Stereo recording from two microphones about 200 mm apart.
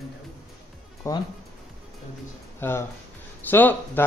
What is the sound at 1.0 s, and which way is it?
Speech, 15° left (ahead or behind).